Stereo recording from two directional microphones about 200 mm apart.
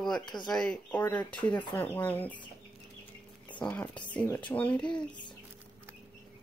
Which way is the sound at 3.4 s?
10° left (ahead or behind).